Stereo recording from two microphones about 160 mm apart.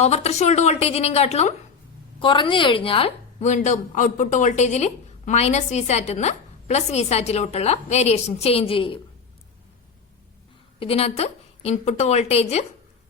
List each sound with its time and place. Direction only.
0.0 s a woman's voice: 40° left (ahead or behind)
2.1 s a woman's voice: 30° left (ahead or behind)
3.4 s a woman's voice: 45° left (ahead or behind)
10.8 s a woman's voice: 35° left (ahead or behind)